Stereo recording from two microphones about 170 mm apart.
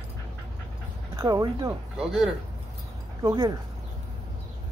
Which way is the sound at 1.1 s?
20° right (ahead or behind).